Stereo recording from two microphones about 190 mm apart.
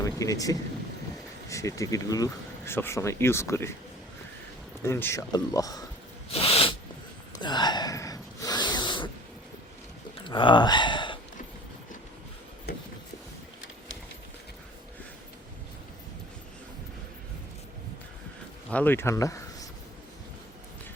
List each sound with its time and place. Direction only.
0.2 s speech: 20° left (ahead or behind)
4.8 s speech: 15° left (ahead or behind)
6.3 s a sound: 30° left (ahead or behind)
7.4 s snort: 20° left (ahead or behind)
10.2 s a sound: 25° left (ahead or behind)
18.7 s speech: 10° left (ahead or behind)